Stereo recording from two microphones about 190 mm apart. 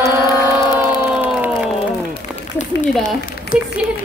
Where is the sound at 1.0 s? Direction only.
10° right (ahead or behind).